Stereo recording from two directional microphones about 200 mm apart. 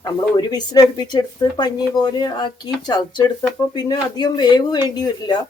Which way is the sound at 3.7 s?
20° left (ahead or behind).